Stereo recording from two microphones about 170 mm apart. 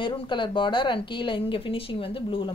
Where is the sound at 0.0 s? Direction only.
30° left (ahead or behind).